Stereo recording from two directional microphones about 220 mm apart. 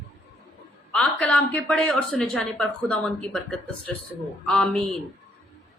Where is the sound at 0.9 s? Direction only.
5° left (ahead or behind).